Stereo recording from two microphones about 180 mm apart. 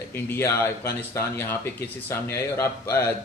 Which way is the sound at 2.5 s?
15° left (ahead or behind).